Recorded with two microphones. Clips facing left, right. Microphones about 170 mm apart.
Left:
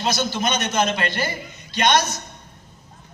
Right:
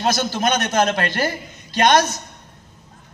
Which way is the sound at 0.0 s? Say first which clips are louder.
Right 3 dB; 45° right (ahead or behind).